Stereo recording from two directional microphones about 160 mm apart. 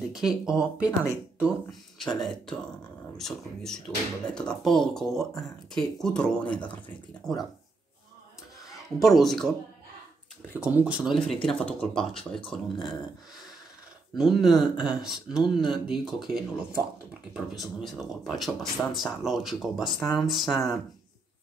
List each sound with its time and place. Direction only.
0.1 s speech: 5° right (ahead or behind)
9.0 s speech: centre (ahead or behind)
10.6 s speech: 5° right (ahead or behind)
11.4 s speech: 5° left (ahead or behind)
14.1 s speech: centre (ahead or behind)